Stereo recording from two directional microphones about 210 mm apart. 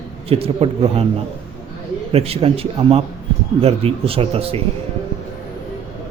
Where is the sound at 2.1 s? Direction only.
30° right (ahead or behind).